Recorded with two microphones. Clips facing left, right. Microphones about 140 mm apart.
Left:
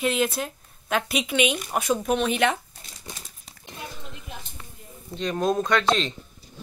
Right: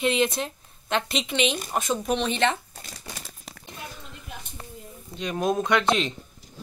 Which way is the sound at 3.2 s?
80° right.